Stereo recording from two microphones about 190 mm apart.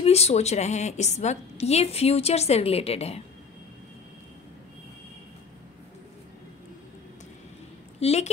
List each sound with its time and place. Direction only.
0.0 s a woman's voice: 35° left (ahead or behind)
8.0 s a woman's voice: 35° left (ahead or behind)